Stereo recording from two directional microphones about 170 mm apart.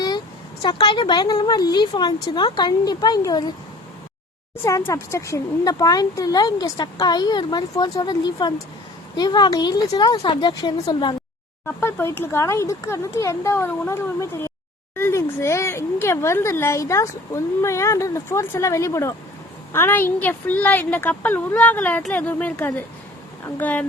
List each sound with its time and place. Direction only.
0.6 s speech: 30° left (ahead or behind)
4.9 s speech: 20° left (ahead or behind)
11.6 s speech: 15° left (ahead or behind)